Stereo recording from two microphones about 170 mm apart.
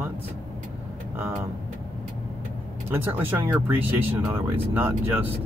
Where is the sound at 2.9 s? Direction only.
10° right (ahead or behind).